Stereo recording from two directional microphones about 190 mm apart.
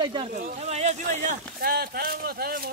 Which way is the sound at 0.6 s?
35° right (ahead or behind).